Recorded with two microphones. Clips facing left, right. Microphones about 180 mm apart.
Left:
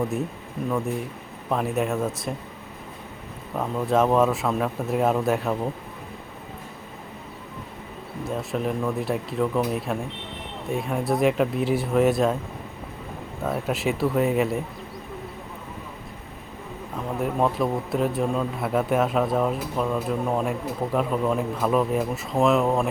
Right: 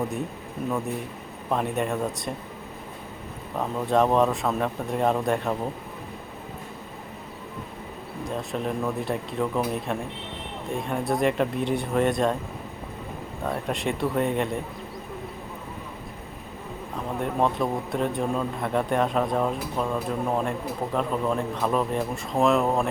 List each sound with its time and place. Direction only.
1.5 s speech: centre (ahead or behind)
3.6 s speech: centre (ahead or behind)
8.2 s speech: centre (ahead or behind)
13.4 s speech: centre (ahead or behind)
17.1 s speech: centre (ahead or behind)